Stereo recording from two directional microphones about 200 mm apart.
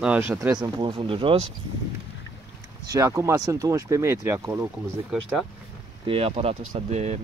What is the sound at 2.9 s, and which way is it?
Speech, 15° right (ahead or behind).